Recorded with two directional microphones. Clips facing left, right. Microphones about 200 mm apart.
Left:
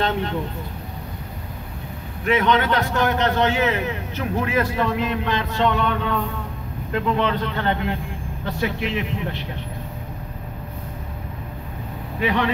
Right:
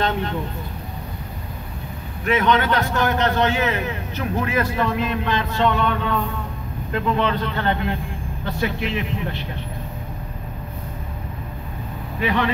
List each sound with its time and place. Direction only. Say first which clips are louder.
2.2 s a man's voice: even; 20° left (ahead or behind)
12.2 s a man's voice: even; 15° left (ahead or behind)